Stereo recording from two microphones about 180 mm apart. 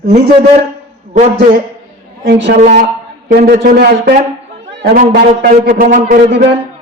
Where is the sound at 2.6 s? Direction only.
45° right (ahead or behind).